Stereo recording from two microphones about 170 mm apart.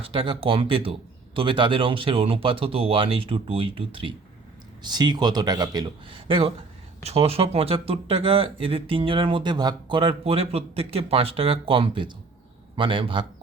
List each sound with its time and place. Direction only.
0.0 s speech: 30° right (ahead or behind)